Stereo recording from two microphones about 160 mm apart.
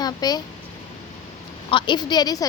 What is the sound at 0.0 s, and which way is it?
Speech, 25° left (ahead or behind).